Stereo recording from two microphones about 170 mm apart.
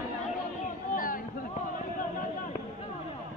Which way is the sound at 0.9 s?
55° left (ahead or behind).